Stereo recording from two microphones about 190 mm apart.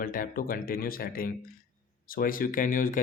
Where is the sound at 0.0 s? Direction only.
45° left (ahead or behind).